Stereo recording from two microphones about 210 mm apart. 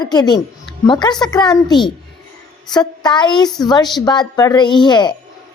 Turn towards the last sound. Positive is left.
turn(degrees=20)  # may be behind; listen again after turning